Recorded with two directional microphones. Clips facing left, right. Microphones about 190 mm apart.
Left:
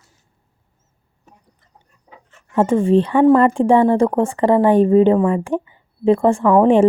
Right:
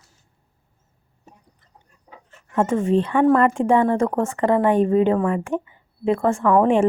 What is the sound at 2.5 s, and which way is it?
A woman's voice, 30° left (ahead or behind).